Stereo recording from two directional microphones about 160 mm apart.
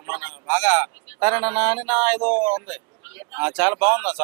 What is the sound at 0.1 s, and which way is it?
Speech, 10° right (ahead or behind).